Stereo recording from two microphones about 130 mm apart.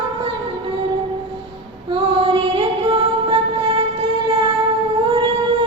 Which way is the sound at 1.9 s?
40° right (ahead or behind).